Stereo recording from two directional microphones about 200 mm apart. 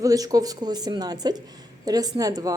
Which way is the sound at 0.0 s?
20° right (ahead or behind).